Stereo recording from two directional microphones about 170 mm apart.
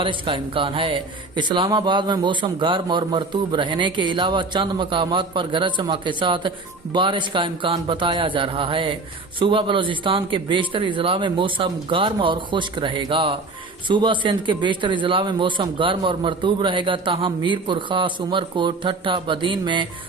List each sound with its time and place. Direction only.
0.0 s a man's voice: 30° right (ahead or behind)